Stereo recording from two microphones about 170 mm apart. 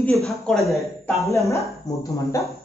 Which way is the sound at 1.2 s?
20° left (ahead or behind).